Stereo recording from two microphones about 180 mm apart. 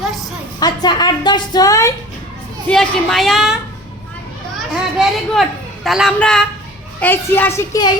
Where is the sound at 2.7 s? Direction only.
Centre (ahead or behind).